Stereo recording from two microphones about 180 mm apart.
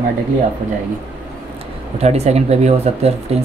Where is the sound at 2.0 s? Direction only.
35° right (ahead or behind).